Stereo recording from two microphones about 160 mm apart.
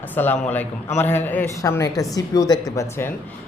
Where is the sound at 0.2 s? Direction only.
10° left (ahead or behind).